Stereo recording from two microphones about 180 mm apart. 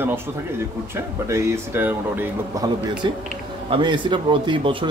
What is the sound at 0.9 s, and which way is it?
Speech, 15° right (ahead or behind).